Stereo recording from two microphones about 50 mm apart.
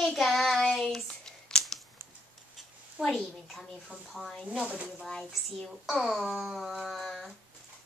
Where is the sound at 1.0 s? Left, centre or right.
Centre.